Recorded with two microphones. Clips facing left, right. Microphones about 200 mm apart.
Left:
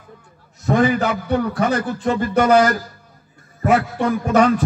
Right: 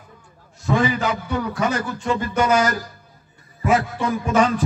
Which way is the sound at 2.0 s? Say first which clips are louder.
Left 4 dB; 55° left (ahead or behind).